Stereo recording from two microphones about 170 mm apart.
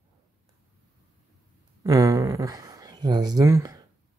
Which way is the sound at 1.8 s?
20° right (ahead or behind).